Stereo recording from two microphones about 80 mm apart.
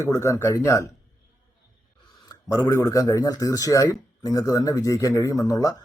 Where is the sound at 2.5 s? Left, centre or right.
Left.